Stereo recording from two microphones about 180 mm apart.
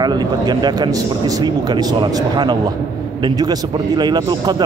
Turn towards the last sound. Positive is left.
turn(degrees=-25)  # may be behind; listen again after turning